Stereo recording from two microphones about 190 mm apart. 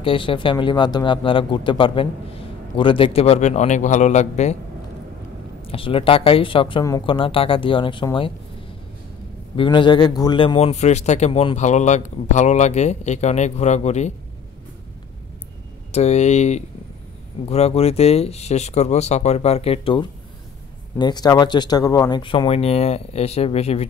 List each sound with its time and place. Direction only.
0.0 s a man's voice: 25° left (ahead or behind)
5.7 s speech: 30° left (ahead or behind)
9.6 s a man's voice: 25° left (ahead or behind)
15.9 s a man's voice: 35° left (ahead or behind)